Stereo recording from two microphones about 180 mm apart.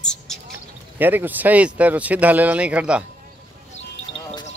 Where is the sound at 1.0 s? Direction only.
10° right (ahead or behind).